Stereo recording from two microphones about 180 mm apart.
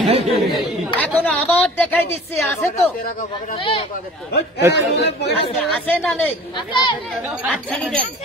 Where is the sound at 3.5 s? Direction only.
30° left (ahead or behind).